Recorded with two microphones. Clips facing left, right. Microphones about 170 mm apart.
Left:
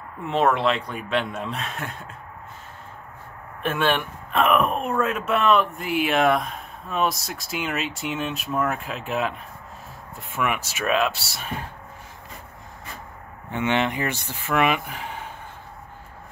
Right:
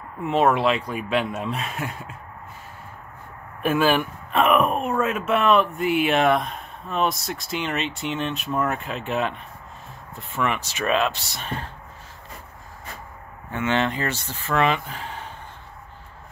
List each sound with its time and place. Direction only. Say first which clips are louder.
0.2 s speech: right 2 dB; 5° right (ahead or behind)
3.6 s speech: right 3 dB; 5° right (ahead or behind)
10.3 s speech: right 1 dB; 10° left (ahead or behind)
13.5 s speech: even; 20° left (ahead or behind)